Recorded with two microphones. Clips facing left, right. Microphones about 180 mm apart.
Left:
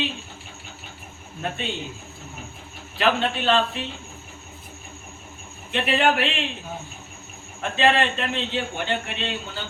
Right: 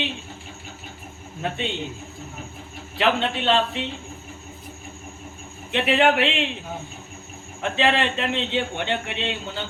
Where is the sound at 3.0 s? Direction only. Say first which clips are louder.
Even; 20° right (ahead or behind).